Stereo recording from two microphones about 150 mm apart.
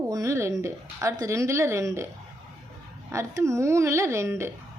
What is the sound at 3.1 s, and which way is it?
A woman's voice, 20° right (ahead or behind).